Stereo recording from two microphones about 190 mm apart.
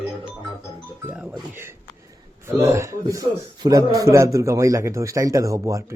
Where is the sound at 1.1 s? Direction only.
5° right (ahead or behind).